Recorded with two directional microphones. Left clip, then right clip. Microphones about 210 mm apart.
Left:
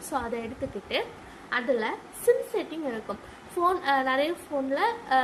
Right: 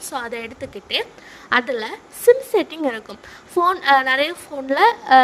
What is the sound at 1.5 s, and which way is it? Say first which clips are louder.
A woman's voice: right 7 dB; 55° right (ahead or behind).